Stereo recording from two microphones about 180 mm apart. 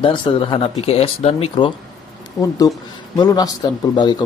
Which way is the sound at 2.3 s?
20° left (ahead or behind).